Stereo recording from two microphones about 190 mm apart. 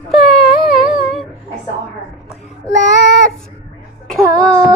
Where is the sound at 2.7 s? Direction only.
70° left (ahead or behind).